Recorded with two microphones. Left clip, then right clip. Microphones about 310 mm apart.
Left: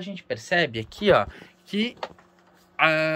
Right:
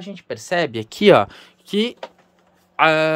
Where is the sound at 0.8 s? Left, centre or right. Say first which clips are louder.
Right 11 dB; right.